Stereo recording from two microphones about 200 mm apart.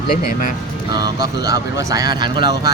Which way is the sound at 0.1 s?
45° left (ahead or behind).